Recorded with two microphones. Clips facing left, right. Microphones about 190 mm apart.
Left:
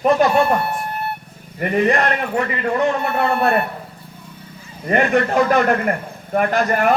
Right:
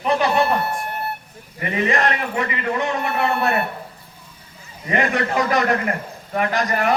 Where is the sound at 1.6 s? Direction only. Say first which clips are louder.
Left 4 dB; 40° left (ahead or behind).